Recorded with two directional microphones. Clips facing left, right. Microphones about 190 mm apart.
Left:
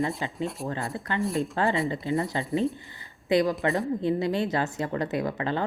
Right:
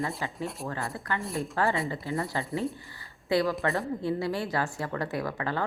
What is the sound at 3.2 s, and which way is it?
A woman's voice, 20° left (ahead or behind).